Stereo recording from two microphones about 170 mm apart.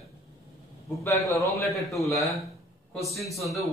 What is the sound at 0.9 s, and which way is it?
A man's voice, 15° left (ahead or behind).